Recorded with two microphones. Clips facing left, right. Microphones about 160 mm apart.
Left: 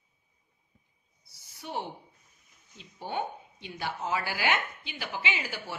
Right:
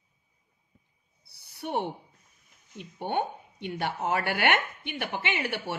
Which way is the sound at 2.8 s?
60° right (ahead or behind).